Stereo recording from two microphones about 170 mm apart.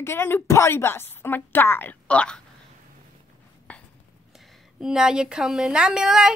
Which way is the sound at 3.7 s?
10° left (ahead or behind).